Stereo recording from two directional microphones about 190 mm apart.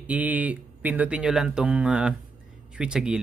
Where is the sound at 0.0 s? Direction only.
10° right (ahead or behind).